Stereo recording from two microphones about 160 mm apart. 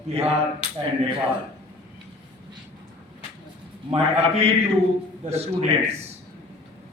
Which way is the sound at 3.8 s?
40° right (ahead or behind).